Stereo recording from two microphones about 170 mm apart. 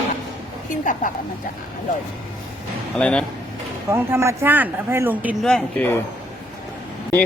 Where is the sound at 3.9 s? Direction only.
15° right (ahead or behind).